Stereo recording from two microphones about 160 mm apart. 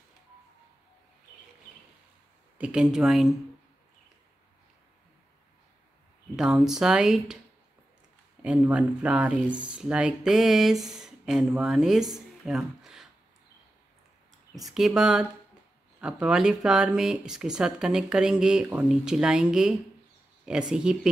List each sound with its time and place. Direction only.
2.6 s speech: 5° right (ahead or behind)
6.3 s speech: 5° right (ahead or behind)
8.4 s speech: 10° right (ahead or behind)
14.5 s speech: centre (ahead or behind)